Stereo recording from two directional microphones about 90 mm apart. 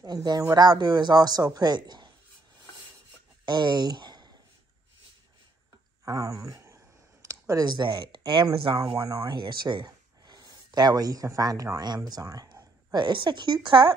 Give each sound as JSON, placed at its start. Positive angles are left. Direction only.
{"t": 0.0, "sound": "a man's voice", "side_deg": -50}
{"t": 3.4, "sound": "speech", "side_deg": -55}
{"t": 6.0, "sound": "a sound", "side_deg": -35}
{"t": 8.7, "sound": "speech", "side_deg": -40}
{"t": 9.3, "sound": "a man's voice", "side_deg": -55}
{"t": 12.9, "sound": "speech", "side_deg": -55}